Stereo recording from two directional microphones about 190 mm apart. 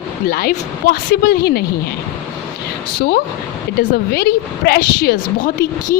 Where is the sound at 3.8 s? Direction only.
55° left (ahead or behind).